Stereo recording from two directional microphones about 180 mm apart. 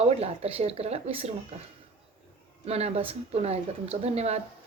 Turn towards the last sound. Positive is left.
turn(degrees=-35)  # may be behind; listen again after turning